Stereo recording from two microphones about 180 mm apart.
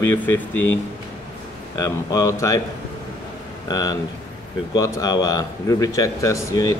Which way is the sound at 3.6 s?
20° left (ahead or behind).